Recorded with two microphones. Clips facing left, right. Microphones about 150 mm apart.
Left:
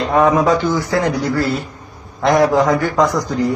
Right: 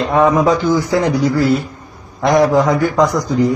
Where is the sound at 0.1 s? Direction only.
Centre (ahead or behind).